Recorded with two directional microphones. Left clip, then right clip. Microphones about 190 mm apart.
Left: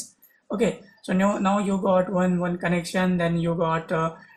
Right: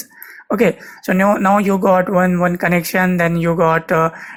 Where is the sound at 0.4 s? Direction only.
30° right (ahead or behind).